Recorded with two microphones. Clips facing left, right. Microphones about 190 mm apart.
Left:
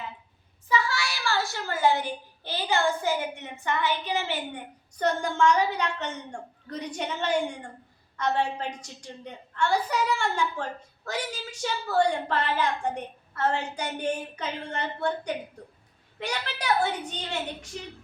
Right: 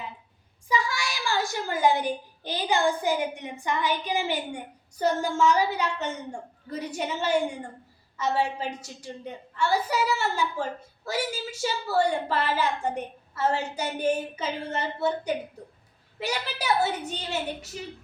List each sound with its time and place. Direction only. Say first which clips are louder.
0.7 s a child's voice: even; 15° right (ahead or behind)